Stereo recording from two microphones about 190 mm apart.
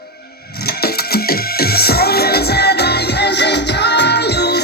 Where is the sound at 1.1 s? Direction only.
55° left (ahead or behind).